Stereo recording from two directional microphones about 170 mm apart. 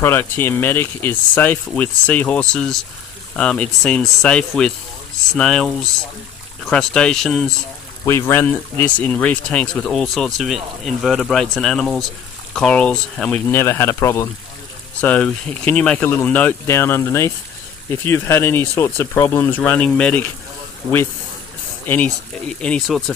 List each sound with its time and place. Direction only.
0.0 s speech: 10° left (ahead or behind)
8.0 s speech: 15° left (ahead or behind)
20.8 s speech: 20° right (ahead or behind)
21.8 s speech: 10° left (ahead or behind)